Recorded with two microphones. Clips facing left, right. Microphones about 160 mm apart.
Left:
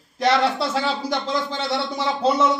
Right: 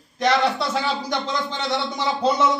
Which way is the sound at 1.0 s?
5° left (ahead or behind).